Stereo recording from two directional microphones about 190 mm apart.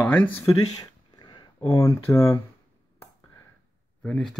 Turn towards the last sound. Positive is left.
turn(degrees=5)  # may be behind; listen again after turning